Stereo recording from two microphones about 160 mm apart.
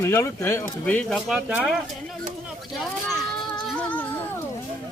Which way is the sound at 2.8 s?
Centre (ahead or behind).